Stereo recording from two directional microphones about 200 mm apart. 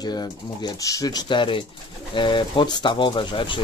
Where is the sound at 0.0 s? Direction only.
20° left (ahead or behind).